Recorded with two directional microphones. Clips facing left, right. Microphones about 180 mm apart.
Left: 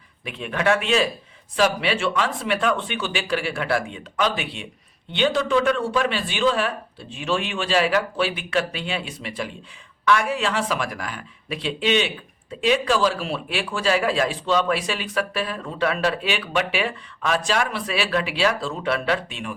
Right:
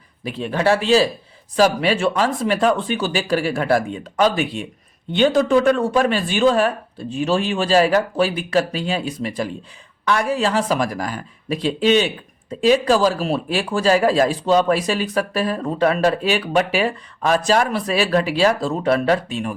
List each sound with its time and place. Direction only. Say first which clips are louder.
0.3 s speech: right 4 dB; 35° right (ahead or behind)